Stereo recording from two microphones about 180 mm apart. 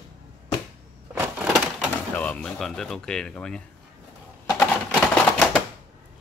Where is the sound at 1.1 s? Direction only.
10° right (ahead or behind).